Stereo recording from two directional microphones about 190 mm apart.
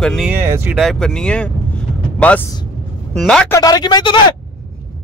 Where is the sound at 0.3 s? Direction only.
10° right (ahead or behind).